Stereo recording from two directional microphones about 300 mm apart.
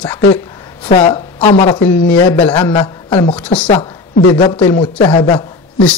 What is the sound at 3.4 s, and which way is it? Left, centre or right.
Speech, centre.